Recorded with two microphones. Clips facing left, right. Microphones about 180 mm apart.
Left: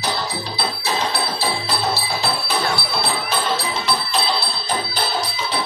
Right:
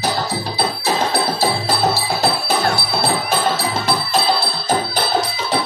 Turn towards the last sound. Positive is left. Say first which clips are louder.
# right 5 dB
turn(degrees=-45)  # may be behind; listen again after turning